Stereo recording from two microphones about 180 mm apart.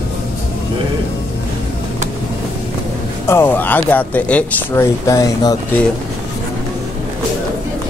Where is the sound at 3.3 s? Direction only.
10° left (ahead or behind).